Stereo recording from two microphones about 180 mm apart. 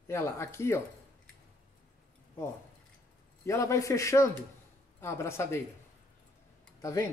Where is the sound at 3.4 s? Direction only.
15° left (ahead or behind).